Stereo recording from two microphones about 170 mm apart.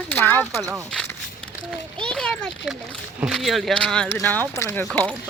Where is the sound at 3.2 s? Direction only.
Centre (ahead or behind).